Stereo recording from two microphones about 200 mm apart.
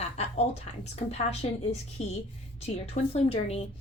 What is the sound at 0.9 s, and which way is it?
A woman's voice, 30° left (ahead or behind).